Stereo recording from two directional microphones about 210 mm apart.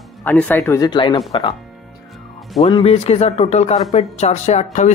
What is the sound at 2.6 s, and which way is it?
Speech, 25° left (ahead or behind).